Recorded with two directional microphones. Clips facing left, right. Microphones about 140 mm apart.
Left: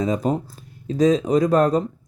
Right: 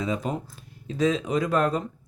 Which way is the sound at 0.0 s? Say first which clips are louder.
Left 7 dB; 40° left (ahead or behind).